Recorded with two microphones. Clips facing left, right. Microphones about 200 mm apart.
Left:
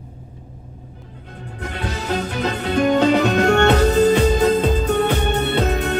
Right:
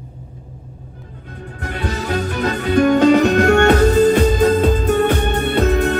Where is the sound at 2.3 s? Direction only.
55° right (ahead or behind).